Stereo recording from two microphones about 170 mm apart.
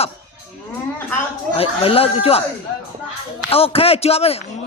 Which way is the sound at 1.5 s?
35° left (ahead or behind).